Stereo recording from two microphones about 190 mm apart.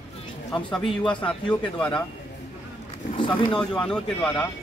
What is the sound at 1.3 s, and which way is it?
Speech, 5° left (ahead or behind).